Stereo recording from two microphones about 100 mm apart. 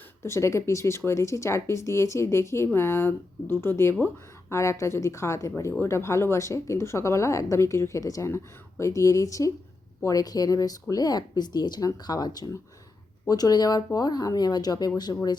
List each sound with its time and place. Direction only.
0.2 s speech: 30° left (ahead or behind); by 15.4 s 45° left (ahead or behind)